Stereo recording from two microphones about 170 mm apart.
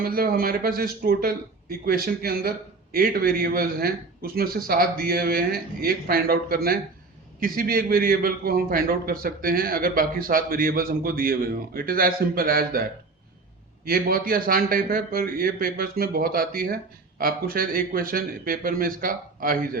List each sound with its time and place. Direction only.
0.0 s a man's voice: 60° right (ahead or behind)
13.8 s a man's voice: 60° right (ahead or behind)